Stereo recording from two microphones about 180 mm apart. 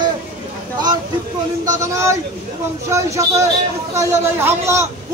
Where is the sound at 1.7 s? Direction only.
15° right (ahead or behind).